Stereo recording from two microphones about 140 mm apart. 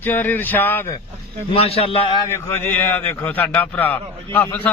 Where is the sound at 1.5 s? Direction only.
45° left (ahead or behind).